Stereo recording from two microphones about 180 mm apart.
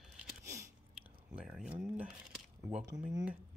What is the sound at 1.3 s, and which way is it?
Speech, 5° right (ahead or behind).